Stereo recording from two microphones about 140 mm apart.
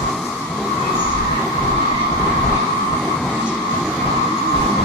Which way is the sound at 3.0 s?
Centre (ahead or behind).